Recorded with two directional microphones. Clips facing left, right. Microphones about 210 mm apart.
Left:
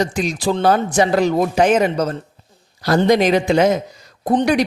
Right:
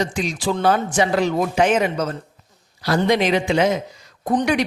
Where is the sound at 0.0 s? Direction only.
40° left (ahead or behind).